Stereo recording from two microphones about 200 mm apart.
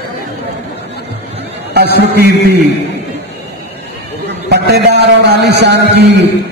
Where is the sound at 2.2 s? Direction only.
50° right (ahead or behind).